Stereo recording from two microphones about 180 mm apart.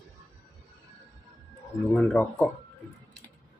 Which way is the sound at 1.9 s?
10° left (ahead or behind).